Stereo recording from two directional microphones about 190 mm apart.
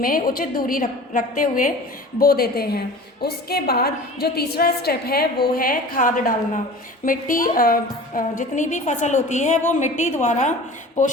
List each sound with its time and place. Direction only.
0.0 s a woman's voice: 50° left (ahead or behind)